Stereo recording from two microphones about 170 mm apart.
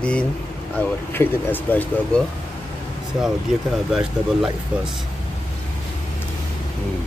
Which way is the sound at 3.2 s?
Centre (ahead or behind).